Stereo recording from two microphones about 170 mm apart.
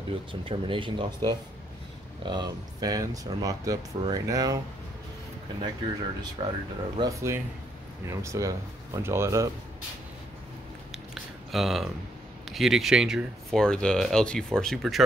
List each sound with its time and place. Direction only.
0.3 s speech: 30° right (ahead or behind)
6.4 s speech: 30° right (ahead or behind)
7.0 s speech: 20° right (ahead or behind)
11.5 s speech: centre (ahead or behind)